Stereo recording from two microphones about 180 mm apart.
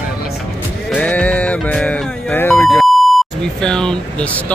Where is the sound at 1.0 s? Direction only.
5° left (ahead or behind).